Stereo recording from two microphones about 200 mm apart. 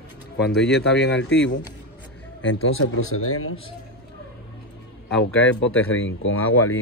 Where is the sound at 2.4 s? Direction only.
90° left.